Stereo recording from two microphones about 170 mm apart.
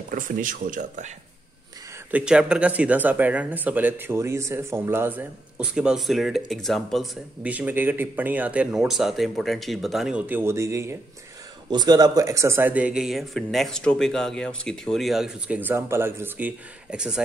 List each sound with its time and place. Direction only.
0.1 s speech: 50° right (ahead or behind)
2.0 s speech: 5° right (ahead or behind)